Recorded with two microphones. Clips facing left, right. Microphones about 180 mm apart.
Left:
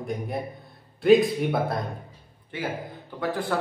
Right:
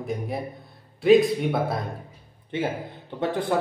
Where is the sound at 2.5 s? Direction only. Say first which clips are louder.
Right 4 dB; 25° right (ahead or behind).